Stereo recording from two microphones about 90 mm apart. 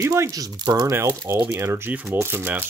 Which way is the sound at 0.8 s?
25° right (ahead or behind).